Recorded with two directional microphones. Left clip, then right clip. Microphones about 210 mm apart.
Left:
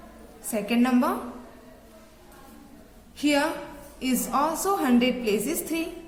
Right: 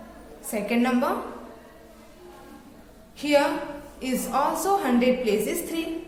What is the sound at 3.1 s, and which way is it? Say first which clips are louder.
A woman's voice: right 3 dB; 30° left (ahead or behind).